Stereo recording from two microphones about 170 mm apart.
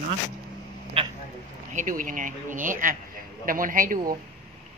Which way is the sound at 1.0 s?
35° right (ahead or behind).